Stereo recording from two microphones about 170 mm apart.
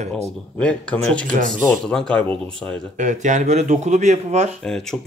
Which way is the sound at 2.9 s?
45° right (ahead or behind).